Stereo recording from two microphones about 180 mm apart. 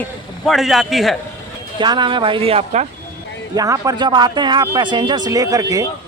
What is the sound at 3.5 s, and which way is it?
Speech, 20° right (ahead or behind).